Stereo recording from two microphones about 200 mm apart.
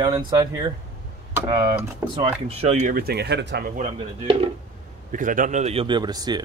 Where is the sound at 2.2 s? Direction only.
30° right (ahead or behind); by 3.7 s 60° right (ahead or behind).